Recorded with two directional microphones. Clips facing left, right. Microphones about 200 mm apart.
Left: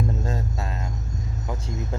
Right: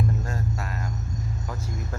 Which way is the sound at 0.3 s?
25° left (ahead or behind).